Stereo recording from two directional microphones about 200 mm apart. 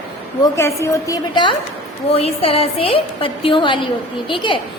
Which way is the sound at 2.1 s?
30° left (ahead or behind).